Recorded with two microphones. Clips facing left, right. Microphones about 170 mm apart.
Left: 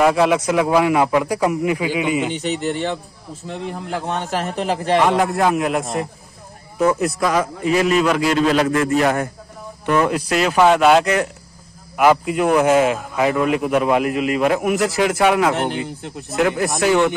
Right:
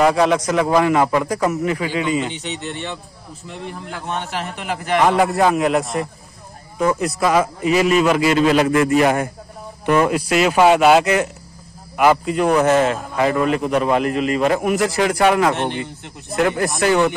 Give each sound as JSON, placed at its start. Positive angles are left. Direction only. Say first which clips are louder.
{"t": 0.0, "sound": "a man's voice", "louder": "even", "side_deg": 5}
{"t": 2.3, "sound": "a man's voice", "louder": "left 6 dB", "side_deg": 40}
{"t": 5.0, "sound": "a man's voice", "louder": "right 5 dB", "side_deg": 0}